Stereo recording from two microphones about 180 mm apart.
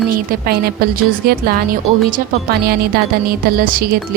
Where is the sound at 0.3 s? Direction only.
60° right (ahead or behind).